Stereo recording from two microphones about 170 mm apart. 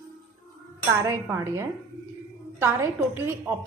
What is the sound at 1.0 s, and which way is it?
A woman's voice, 15° right (ahead or behind).